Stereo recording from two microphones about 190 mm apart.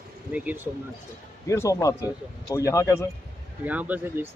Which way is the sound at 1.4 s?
15° left (ahead or behind).